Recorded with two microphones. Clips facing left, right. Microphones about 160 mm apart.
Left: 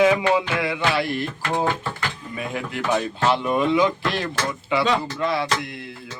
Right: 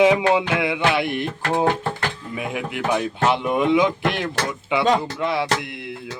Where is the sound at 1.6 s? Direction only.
60° right (ahead or behind).